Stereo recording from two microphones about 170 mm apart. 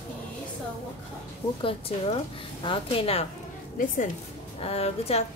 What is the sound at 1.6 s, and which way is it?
A woman's voice, 35° left (ahead or behind).